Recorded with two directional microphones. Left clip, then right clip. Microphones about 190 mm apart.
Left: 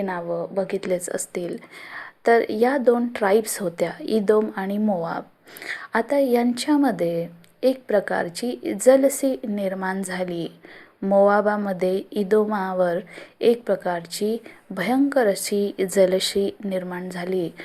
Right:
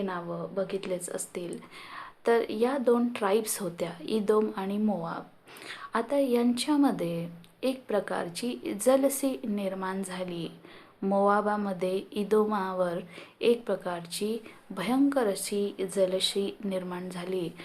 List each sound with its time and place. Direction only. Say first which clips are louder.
0.0 s speech: left 8 dB; 30° left (ahead or behind)